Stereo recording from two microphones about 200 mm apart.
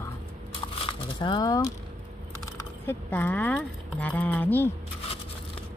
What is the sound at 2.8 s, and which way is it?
Speech, 10° left (ahead or behind).